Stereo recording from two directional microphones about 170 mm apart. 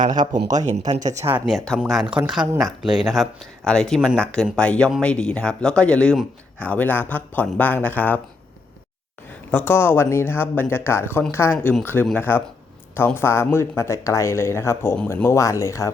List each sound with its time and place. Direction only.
0.2 s speech: 50° right (ahead or behind)
1.5 s speech: centre (ahead or behind)
9.5 s speech: 10° left (ahead or behind)